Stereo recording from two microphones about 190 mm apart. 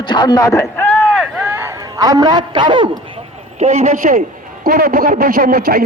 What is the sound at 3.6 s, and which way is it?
A man's voice, 35° right (ahead or behind).